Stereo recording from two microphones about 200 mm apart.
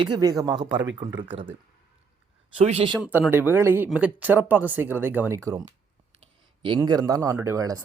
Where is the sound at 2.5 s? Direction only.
30° right (ahead or behind).